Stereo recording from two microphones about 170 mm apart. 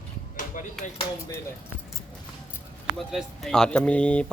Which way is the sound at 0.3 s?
50° left (ahead or behind).